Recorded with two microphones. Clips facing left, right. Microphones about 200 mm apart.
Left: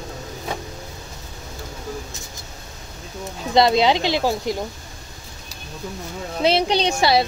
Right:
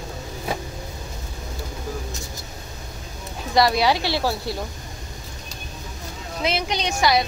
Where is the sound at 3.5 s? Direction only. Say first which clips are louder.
Left 3 dB; 20° left (ahead or behind).